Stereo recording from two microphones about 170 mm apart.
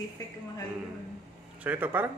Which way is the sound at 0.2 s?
20° left (ahead or behind).